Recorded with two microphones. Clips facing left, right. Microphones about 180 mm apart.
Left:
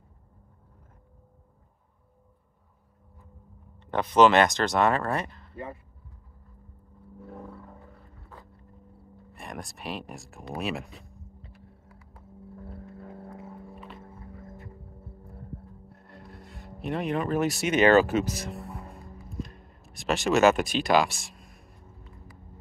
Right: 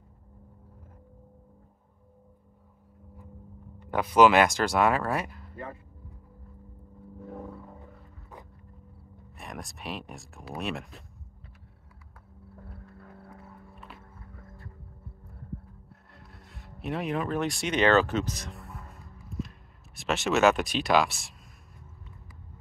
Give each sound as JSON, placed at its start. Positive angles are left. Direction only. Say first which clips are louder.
{"t": 3.9, "sound": "speech", "louder": "even", "side_deg": -5}
{"t": 7.2, "sound": "a sound", "louder": "right 2 dB", "side_deg": 0}
{"t": 9.3, "sound": "speech", "louder": "left 2 dB", "side_deg": 0}
{"t": 12.8, "sound": "vehicle", "louder": "left 6 dB", "side_deg": 25}
{"t": 14.1, "sound": "music", "louder": "left 6 dB", "side_deg": 25}
{"t": 15.9, "sound": "music", "louder": "left 6 dB", "side_deg": 0}
{"t": 16.8, "sound": "speech", "louder": "left 2 dB", "side_deg": 0}
{"t": 19.2, "sound": "a sound", "louder": "right 1 dB", "side_deg": 0}